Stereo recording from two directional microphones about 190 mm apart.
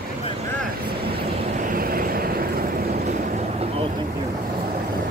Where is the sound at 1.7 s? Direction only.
50° right (ahead or behind).